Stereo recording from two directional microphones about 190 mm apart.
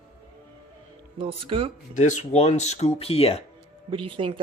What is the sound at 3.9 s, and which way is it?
Speech, 30° right (ahead or behind).